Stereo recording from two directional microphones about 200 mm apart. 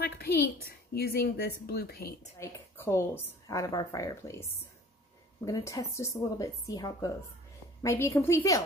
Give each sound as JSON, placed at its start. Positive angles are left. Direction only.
{"t": 0.0, "sound": "a woman's voice", "side_deg": 50}
{"t": 2.3, "sound": "a woman's voice", "side_deg": 15}